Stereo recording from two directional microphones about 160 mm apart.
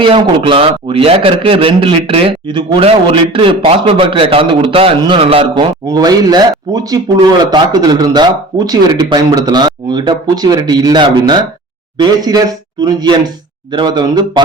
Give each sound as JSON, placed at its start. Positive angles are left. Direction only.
{"t": 0.0, "sound": "a man's voice", "side_deg": -35}